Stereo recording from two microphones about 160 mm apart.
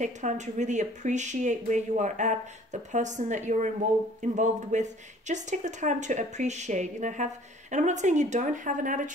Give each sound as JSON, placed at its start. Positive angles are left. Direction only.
{"t": 0.0, "sound": "speech", "side_deg": -50}